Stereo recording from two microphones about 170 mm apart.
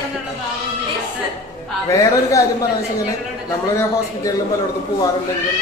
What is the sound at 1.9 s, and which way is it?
Speech, 20° left (ahead or behind).